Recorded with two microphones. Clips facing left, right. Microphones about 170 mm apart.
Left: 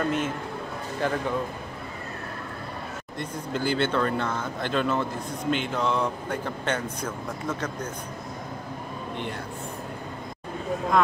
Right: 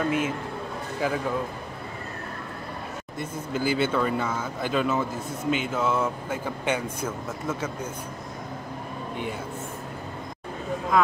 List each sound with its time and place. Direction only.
0.0 s speech: 5° right (ahead or behind)
3.2 s speech: 5° right (ahead or behind)